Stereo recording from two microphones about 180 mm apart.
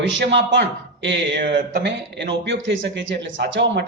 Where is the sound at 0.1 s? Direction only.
80° right.